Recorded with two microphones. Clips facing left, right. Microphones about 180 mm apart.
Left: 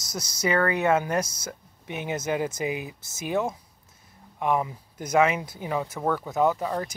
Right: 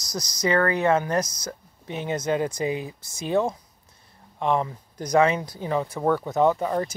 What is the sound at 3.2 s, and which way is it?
Speech, 5° left (ahead or behind).